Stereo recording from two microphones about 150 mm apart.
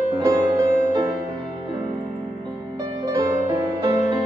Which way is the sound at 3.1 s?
25° right (ahead or behind).